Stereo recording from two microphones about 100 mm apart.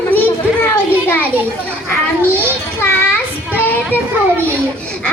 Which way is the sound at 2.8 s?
25° left (ahead or behind).